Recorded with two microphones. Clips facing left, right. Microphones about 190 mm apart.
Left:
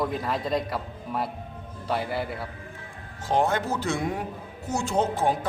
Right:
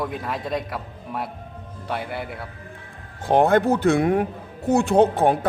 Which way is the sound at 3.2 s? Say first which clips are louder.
Right 7 dB; 60° right (ahead or behind).